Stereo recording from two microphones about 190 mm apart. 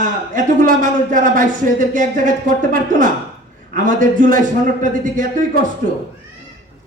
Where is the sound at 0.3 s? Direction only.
45° right (ahead or behind).